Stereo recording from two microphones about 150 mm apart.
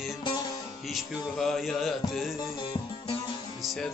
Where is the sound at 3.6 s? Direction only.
Centre (ahead or behind).